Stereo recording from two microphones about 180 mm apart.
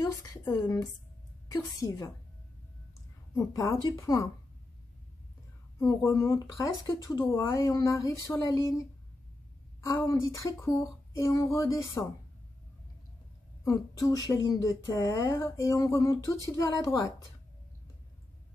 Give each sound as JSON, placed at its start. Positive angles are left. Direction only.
{"t": 0.0, "sound": "speech", "side_deg": 20}
{"t": 3.3, "sound": "speech", "side_deg": 20}
{"t": 5.8, "sound": "speech", "side_deg": 15}
{"t": 9.8, "sound": "speech", "side_deg": 15}
{"t": 13.7, "sound": "speech", "side_deg": 20}